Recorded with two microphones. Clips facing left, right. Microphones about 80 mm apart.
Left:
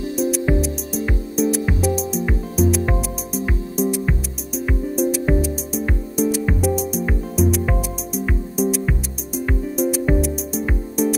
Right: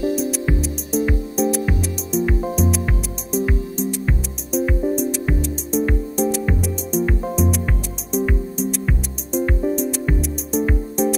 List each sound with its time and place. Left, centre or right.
0.1 s music: centre